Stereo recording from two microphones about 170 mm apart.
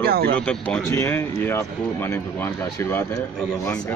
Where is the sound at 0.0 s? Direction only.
65° right (ahead or behind).